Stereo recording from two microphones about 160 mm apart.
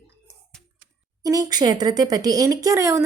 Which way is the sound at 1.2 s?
20° right (ahead or behind).